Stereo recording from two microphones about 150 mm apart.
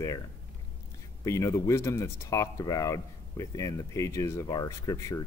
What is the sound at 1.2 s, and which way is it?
Speech, 20° left (ahead or behind).